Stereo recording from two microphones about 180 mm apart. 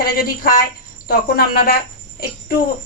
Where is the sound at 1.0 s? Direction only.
55° left (ahead or behind).